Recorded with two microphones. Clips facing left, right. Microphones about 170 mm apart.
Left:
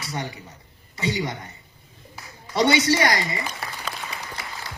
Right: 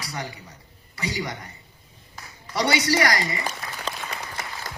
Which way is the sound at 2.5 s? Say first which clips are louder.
Left 3 dB; 20° left (ahead or behind).